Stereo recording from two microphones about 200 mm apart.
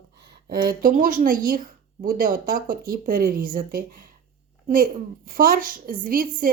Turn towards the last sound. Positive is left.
turn(degrees=-45)  # may be behind; listen again after turning